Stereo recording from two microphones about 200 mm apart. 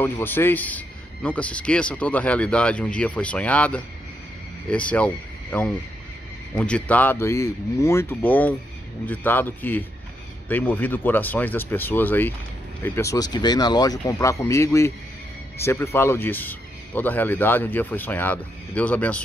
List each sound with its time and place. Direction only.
0.0 s a man's voice: 10° left (ahead or behind)